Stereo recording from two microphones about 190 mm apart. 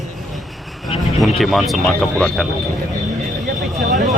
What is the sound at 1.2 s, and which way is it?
Speech, centre (ahead or behind).